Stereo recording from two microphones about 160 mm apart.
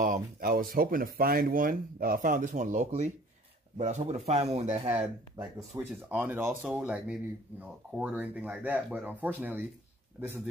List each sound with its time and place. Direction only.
0.0 s speech: 60° right (ahead or behind); by 4.9 s 40° right (ahead or behind)
5.4 s speech: 10° right (ahead or behind)